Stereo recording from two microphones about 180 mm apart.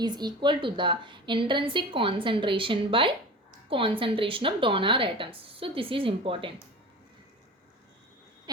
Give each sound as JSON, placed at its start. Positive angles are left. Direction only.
{"t": 0.0, "sound": "a woman's voice", "side_deg": -25}